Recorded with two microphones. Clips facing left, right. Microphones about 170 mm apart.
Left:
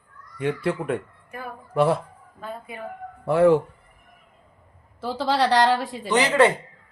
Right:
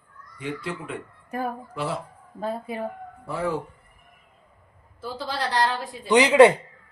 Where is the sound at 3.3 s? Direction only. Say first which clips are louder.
Left 11 dB; 65° left (ahead or behind).